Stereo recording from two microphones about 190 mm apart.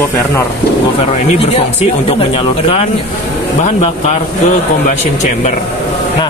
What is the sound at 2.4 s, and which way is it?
A man's voice, 30° left (ahead or behind).